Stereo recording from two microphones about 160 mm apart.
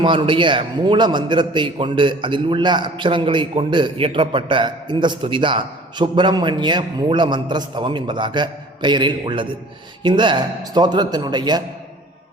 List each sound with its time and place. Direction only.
0.0 s a man's voice: 30° right (ahead or behind)